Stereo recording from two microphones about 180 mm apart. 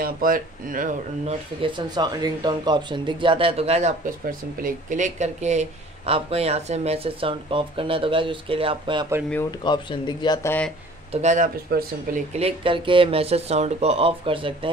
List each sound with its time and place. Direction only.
0.0 s speech: 50° right (ahead or behind)
1.6 s speech: 25° right (ahead or behind)
4.6 s speech: 50° right (ahead or behind); by 9.0 s 30° right (ahead or behind)
9.6 s speech: 25° left (ahead or behind)
11.1 s speech: 40° right (ahead or behind)
12.4 s speech: 30° right (ahead or behind)